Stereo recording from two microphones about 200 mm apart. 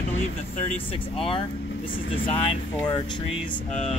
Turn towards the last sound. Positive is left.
turn(degrees=25)  # may be behind; listen again after turning